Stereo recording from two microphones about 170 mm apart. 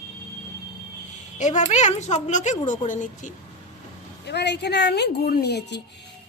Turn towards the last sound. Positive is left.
turn(degrees=85)